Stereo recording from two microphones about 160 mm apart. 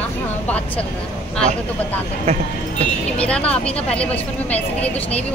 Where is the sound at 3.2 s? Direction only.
5° left (ahead or behind).